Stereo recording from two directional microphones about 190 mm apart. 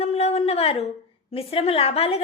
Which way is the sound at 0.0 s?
35° left (ahead or behind).